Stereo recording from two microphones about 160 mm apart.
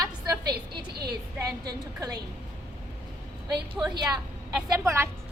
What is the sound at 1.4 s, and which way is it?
Speech, 25° right (ahead or behind).